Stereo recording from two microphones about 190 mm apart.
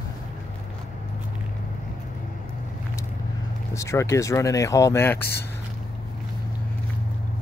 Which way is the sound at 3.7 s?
15° left (ahead or behind).